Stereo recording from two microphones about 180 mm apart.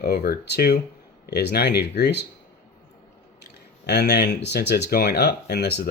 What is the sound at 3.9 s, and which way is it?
Speech, 70° left (ahead or behind).